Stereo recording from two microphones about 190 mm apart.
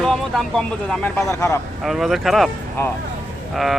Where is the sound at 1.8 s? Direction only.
Centre (ahead or behind).